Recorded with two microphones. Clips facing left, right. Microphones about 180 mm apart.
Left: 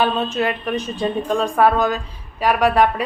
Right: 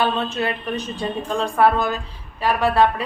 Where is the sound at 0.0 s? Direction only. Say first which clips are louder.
Left 2 dB; 15° left (ahead or behind).